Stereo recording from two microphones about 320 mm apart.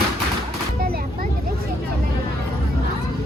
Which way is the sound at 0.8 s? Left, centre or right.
Right.